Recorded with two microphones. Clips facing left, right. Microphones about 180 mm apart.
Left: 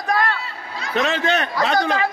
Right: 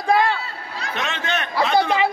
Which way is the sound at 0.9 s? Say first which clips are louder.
Left 7 dB; 35° left (ahead or behind).